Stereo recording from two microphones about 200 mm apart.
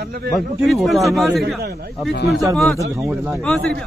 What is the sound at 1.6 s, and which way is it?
Speech, 50° right (ahead or behind).